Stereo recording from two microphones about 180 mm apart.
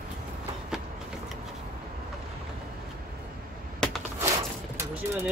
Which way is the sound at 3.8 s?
5° left (ahead or behind).